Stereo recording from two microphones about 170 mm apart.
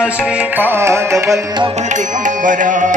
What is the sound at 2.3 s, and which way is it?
Music, 50° right (ahead or behind).